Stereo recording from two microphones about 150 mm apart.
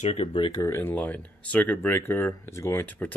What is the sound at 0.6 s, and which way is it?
Speech, 15° left (ahead or behind).